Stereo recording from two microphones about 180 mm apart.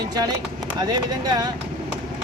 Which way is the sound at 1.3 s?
20° right (ahead or behind).